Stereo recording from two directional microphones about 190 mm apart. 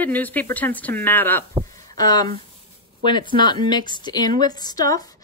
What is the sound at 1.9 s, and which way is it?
Speech, 20° left (ahead or behind).